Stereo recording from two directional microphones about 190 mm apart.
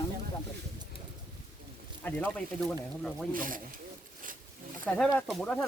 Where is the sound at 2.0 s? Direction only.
5° left (ahead or behind).